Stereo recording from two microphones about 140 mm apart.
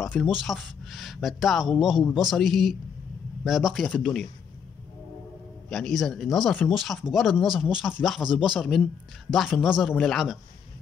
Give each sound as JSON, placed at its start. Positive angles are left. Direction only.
{"t": 0.2, "sound": "speech", "side_deg": 0}
{"t": 5.7, "sound": "speech", "side_deg": 5}